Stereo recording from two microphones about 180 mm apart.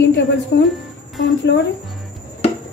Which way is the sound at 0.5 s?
70° left (ahead or behind).